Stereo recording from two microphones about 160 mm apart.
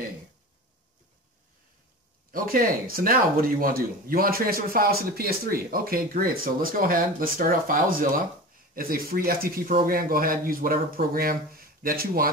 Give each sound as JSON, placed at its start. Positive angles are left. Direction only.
{"t": 2.3, "sound": "speech", "side_deg": -65}